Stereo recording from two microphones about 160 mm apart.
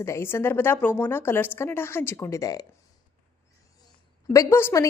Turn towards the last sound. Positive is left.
turn(degrees=15)  # may be behind; listen again after turning